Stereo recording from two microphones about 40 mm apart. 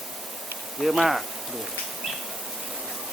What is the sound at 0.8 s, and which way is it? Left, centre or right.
Speech, centre.